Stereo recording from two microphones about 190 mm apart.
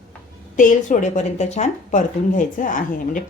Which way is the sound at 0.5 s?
40° left (ahead or behind).